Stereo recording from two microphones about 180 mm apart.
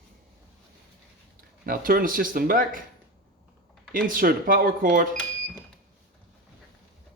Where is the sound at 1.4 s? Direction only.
55° right (ahead or behind).